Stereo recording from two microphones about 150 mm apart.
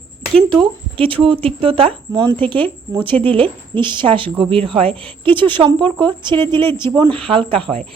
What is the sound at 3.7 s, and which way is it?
A woman's voice, 30° right (ahead or behind).